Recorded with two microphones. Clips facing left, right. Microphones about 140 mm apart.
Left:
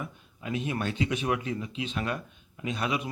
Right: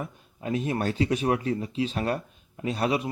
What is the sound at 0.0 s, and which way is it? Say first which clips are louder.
Speech: right 4 dB; 40° right (ahead or behind).